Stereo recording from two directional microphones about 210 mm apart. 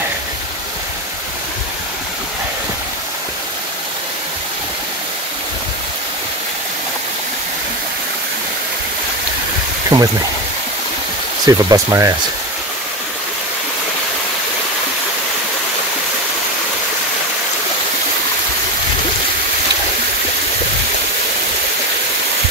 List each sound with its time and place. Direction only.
9.9 s speech: 20° right (ahead or behind)
11.4 s speech: 15° right (ahead or behind)